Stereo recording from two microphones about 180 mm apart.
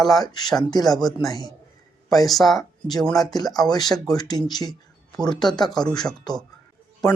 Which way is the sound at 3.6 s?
20° left (ahead or behind).